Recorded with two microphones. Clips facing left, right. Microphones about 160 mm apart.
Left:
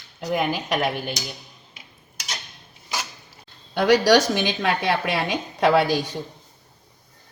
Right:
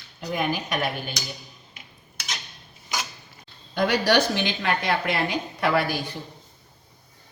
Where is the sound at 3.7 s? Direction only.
80° left.